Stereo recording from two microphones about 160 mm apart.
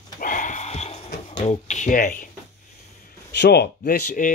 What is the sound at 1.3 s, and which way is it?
Speech, 50° left (ahead or behind).